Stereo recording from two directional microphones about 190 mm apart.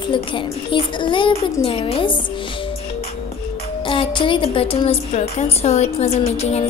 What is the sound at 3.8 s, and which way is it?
A woman's voice, 25° left (ahead or behind).